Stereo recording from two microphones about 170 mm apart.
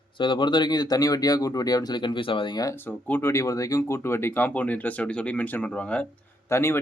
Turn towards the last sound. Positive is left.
turn(degrees=15)  # may be behind; listen again after turning